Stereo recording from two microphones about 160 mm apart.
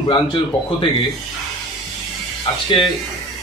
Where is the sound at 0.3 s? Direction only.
30° left (ahead or behind).